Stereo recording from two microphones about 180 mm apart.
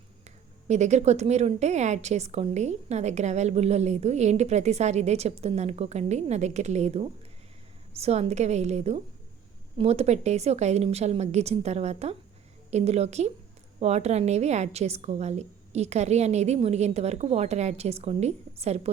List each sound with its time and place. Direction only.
0.3 s speech: 40° right (ahead or behind)